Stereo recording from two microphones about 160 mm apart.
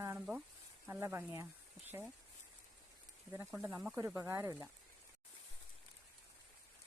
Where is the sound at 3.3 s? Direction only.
15° right (ahead or behind).